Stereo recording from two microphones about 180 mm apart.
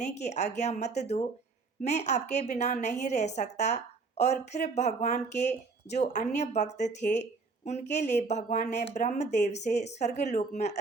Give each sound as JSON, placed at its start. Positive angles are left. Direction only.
{"t": 0.0, "sound": "speech", "side_deg": 40}